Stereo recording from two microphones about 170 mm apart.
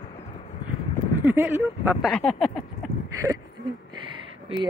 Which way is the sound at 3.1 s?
20° right (ahead or behind).